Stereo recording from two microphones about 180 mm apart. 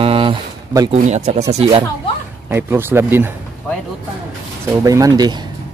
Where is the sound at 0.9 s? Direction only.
40° right (ahead or behind).